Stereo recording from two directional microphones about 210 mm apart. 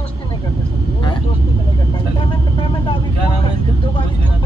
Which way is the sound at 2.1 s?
25° left (ahead or behind).